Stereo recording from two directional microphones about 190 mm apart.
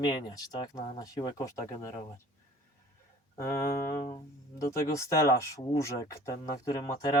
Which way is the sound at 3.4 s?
15° left (ahead or behind).